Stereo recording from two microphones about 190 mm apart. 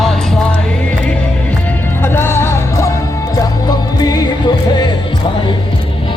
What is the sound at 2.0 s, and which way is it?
Music, 10° left (ahead or behind).